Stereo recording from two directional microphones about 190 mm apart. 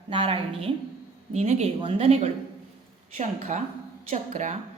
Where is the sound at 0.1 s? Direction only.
30° right (ahead or behind).